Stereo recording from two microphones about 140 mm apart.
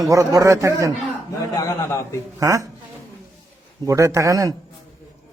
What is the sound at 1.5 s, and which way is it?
Speech, 20° left (ahead or behind).